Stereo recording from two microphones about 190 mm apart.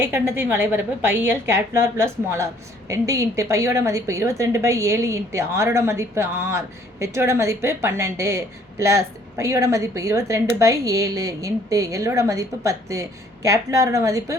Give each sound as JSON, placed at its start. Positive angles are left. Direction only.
{"t": 0.0, "sound": "a woman's voice", "side_deg": -10}